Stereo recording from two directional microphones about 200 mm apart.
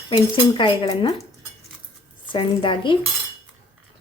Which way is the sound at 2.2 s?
25° left (ahead or behind).